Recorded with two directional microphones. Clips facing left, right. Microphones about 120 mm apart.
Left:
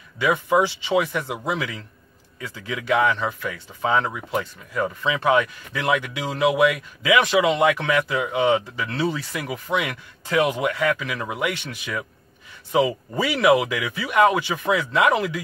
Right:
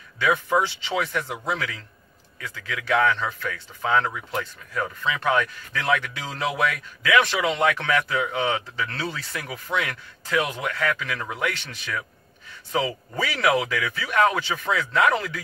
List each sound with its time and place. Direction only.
0.2 s speech: 15° left (ahead or behind)